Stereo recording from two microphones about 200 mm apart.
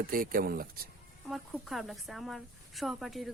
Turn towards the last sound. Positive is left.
turn(degrees=0)  # may be behind; listen again after turning